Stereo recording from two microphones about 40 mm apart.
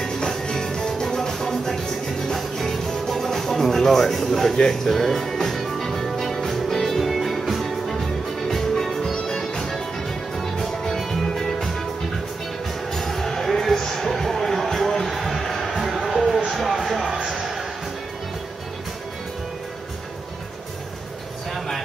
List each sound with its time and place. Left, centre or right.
0.0 s music: centre
12.9 s music: centre
16.4 s a sound: centre
17.3 s music: centre